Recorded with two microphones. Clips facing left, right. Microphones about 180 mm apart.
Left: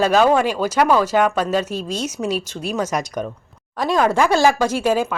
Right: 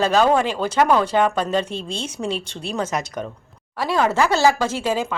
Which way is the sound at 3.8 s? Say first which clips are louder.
Left 2 dB; 15° left (ahead or behind).